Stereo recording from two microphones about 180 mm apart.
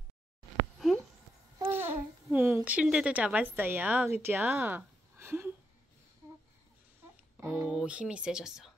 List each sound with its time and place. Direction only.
1.6 s babbling: 10° right (ahead or behind)
2.2 s a woman's voice: 10° right (ahead or behind)
6.2 s babbling: 15° right (ahead or behind)
7.3 s speech: 15° right (ahead or behind)